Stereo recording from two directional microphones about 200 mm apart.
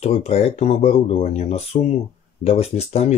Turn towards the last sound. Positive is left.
turn(degrees=30)  # may be behind; listen again after turning